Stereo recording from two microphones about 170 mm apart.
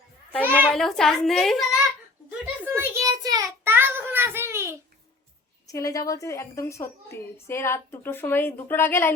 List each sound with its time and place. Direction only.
0.4 s a sound: 10° right (ahead or behind)
0.7 s a child's voice: centre (ahead or behind)
2.4 s child singing: 10° right (ahead or behind)
5.6 s a woman's voice: 20° left (ahead or behind)